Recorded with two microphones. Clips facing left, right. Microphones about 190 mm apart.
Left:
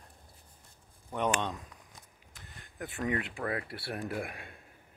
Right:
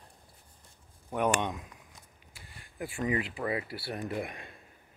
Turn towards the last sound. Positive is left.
turn(degrees=5)  # may be behind; listen again after turning